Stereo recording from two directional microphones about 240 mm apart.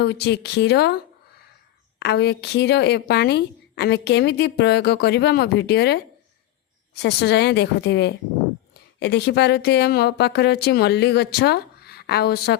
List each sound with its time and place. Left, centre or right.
0.0 s a woman's voice: left
2.0 s a woman's voice: left